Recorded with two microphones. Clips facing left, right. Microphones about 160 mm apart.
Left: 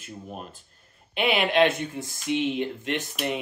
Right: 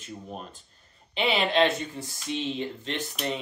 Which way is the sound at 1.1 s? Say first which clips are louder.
Left 2 dB; 10° left (ahead or behind).